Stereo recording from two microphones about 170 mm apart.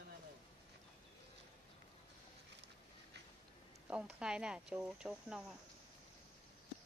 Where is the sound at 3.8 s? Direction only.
5° right (ahead or behind).